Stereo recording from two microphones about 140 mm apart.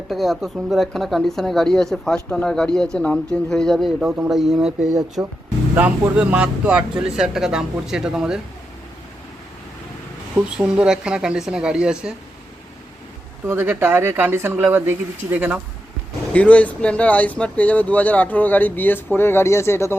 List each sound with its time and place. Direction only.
0.1 s speech: centre (ahead or behind)
10.3 s speech: 5° right (ahead or behind)
13.5 s speech: 15° right (ahead or behind)
16.3 s speech: 10° left (ahead or behind)